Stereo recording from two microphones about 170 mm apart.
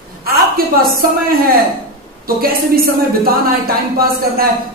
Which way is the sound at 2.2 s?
60° right (ahead or behind).